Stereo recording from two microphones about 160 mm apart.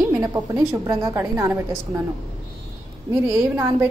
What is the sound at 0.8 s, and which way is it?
Speech, 15° right (ahead or behind).